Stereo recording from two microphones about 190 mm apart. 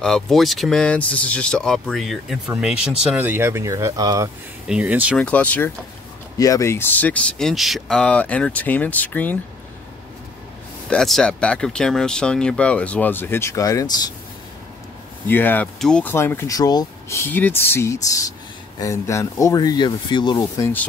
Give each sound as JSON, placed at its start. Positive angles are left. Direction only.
{"t": 0.0, "sound": "speech", "side_deg": 0}
{"t": 4.6, "sound": "speech", "side_deg": -5}
{"t": 5.1, "sound": "speech", "side_deg": 5}
{"t": 10.9, "sound": "speech", "side_deg": 5}
{"t": 15.2, "sound": "speech", "side_deg": 10}